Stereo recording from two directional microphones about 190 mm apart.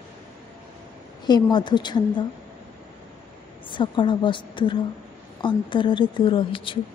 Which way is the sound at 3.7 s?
25° left (ahead or behind).